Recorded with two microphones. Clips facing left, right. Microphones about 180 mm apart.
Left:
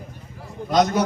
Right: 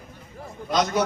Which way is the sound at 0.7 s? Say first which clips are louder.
Left 4 dB; 45° left (ahead or behind).